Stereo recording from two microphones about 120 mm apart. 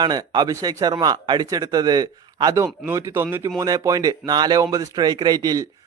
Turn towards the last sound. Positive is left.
turn(degrees=-35)  # may be behind; listen again after turning